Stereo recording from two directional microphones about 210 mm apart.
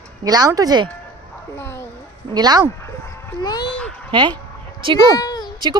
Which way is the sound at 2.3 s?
20° right (ahead or behind).